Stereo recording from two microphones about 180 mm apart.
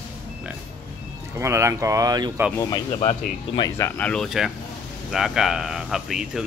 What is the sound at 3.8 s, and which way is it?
Speech, 5° left (ahead or behind).